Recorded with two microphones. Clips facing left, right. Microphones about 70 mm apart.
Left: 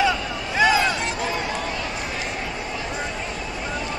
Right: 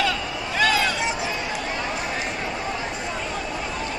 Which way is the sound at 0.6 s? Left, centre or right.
Centre.